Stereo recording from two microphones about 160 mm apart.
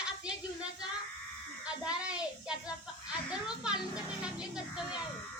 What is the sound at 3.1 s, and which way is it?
Speech, 5° right (ahead or behind).